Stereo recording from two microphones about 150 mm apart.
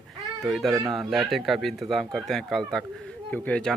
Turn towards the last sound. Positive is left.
turn(degrees=10)  # may be behind; listen again after turning